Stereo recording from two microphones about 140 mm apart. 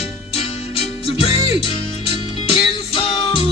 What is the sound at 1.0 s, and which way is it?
Music, 40° left (ahead or behind).